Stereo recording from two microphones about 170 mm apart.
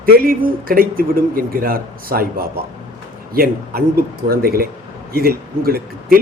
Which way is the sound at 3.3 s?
65° right (ahead or behind).